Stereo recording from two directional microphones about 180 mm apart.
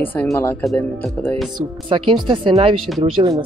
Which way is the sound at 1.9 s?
30° right (ahead or behind).